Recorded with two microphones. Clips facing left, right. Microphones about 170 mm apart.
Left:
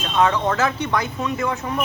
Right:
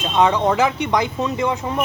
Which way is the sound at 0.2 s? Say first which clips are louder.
Right 3 dB; 15° right (ahead or behind).